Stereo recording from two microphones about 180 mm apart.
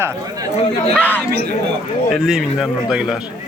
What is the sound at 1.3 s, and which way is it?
Speech, 60° right (ahead or behind).